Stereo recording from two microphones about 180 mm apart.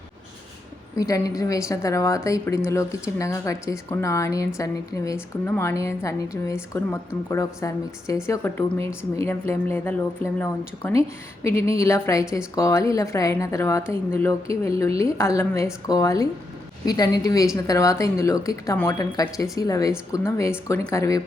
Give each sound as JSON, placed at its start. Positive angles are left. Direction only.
{"t": 0.9, "sound": "a woman's voice", "side_deg": 20}